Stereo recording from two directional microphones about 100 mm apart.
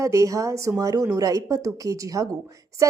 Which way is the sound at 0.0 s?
30° right (ahead or behind).